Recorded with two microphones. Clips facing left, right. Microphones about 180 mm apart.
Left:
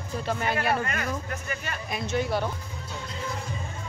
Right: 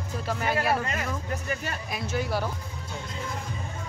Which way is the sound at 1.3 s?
35° right (ahead or behind).